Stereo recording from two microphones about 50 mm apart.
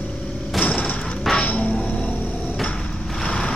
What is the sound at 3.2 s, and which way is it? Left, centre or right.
Vehicle, centre.